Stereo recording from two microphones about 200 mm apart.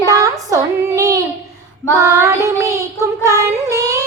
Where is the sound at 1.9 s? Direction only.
15° right (ahead or behind).